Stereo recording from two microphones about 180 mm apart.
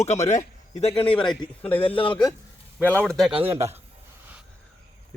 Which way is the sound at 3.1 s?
Centre (ahead or behind).